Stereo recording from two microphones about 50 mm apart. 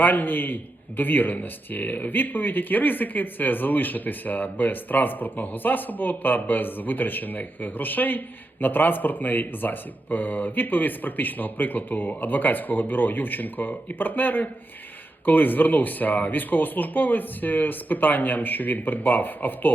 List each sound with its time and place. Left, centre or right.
0.0 s a man's voice: left